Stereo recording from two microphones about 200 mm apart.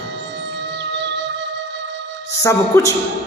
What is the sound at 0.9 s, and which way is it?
Music, 60° right (ahead or behind).